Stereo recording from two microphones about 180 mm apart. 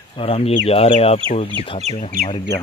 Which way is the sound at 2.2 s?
55° right (ahead or behind).